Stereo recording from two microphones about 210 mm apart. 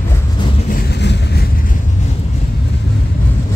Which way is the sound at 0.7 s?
55° left (ahead or behind).